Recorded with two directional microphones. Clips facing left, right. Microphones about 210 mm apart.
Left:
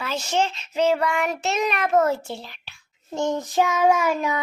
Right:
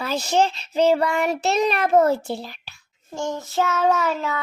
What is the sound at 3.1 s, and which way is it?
Child singing, 20° left (ahead or behind).